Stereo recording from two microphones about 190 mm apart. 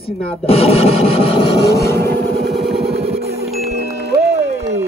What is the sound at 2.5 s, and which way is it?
Cacophony, centre (ahead or behind).